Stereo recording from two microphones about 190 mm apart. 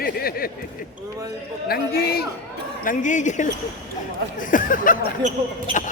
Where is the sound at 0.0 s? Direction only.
50° left (ahead or behind).